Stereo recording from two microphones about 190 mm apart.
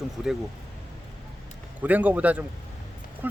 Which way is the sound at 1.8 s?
10° right (ahead or behind).